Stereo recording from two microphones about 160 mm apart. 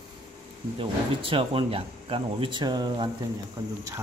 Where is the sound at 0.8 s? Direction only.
35° right (ahead or behind).